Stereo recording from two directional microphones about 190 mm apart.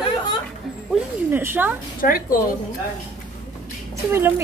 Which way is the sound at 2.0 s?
50° left (ahead or behind).